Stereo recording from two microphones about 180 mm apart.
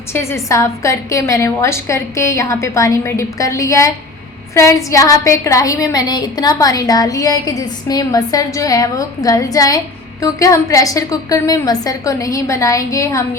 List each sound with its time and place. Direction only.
0.1 s a woman's voice: 15° left (ahead or behind)